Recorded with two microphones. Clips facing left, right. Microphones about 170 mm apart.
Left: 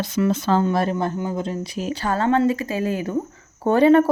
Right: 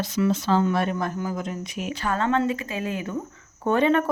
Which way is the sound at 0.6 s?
35° left (ahead or behind).